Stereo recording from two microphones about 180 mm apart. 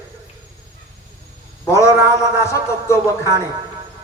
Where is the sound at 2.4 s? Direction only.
15° left (ahead or behind).